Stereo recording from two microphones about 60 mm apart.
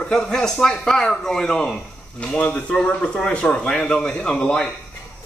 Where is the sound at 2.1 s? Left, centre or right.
Left.